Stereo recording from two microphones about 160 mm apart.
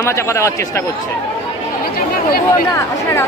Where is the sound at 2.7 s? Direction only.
15° left (ahead or behind).